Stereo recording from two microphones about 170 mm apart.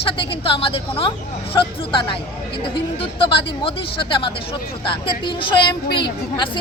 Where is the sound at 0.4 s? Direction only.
30° left (ahead or behind).